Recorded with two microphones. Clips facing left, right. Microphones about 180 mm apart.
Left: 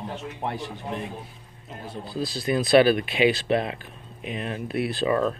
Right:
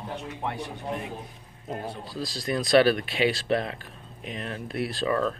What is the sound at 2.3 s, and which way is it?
Speech, 5° left (ahead or behind).